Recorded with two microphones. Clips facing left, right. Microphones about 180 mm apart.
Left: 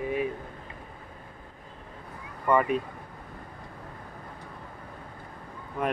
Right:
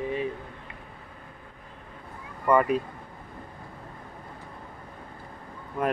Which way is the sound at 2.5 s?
Centre (ahead or behind).